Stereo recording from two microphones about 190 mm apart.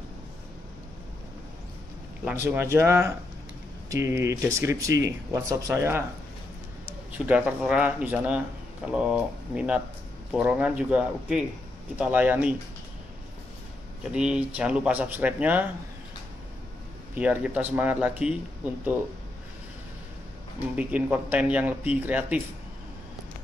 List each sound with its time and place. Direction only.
2.2 s speech: 10° right (ahead or behind)
7.1 s speech: 10° right (ahead or behind)
14.1 s speech: 5° right (ahead or behind)
17.1 s speech: 10° right (ahead or behind)
20.7 s speech: 5° right (ahead or behind)